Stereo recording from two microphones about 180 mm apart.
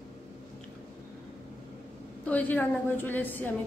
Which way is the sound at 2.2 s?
10° left (ahead or behind).